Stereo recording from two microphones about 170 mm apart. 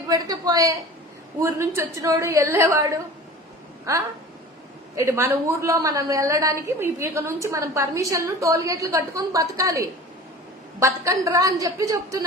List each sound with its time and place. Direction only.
0.1 s a woman's voice: 20° right (ahead or behind)